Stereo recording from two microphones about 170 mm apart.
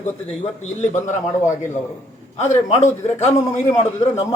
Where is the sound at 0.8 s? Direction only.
45° left (ahead or behind).